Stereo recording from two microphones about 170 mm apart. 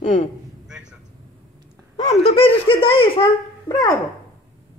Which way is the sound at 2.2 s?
35° left (ahead or behind).